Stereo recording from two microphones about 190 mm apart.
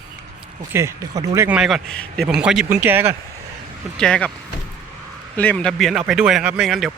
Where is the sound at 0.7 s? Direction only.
15° right (ahead or behind).